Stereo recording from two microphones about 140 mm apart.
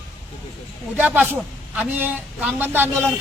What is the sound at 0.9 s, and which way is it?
A man's voice, 15° right (ahead or behind).